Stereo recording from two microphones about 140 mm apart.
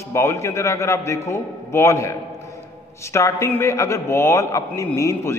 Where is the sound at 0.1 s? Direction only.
20° left (ahead or behind).